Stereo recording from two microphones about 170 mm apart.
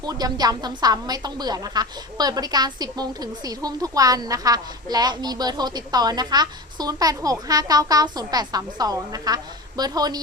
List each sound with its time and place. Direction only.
0.0 s a woman's voice: 25° right (ahead or behind)